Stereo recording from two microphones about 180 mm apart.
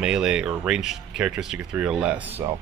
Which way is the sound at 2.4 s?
20° right (ahead or behind).